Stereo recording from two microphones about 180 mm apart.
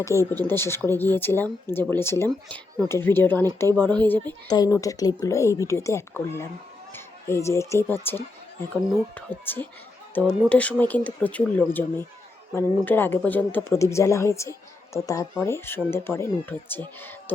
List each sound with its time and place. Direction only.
0.0 s speech: 15° left (ahead or behind)
4.4 s speech: 20° left (ahead or behind)
9.1 s speech: 10° left (ahead or behind)